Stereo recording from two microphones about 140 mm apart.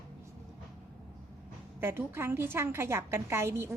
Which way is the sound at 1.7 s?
15° right (ahead or behind).